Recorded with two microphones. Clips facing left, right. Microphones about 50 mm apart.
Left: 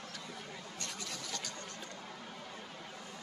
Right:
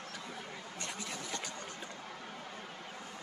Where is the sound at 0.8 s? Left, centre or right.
Centre.